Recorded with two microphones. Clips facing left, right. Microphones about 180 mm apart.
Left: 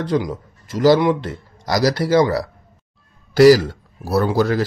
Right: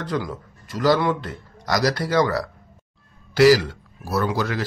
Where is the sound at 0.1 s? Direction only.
20° left (ahead or behind).